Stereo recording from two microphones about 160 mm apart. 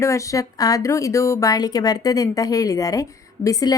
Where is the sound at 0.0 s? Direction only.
20° left (ahead or behind).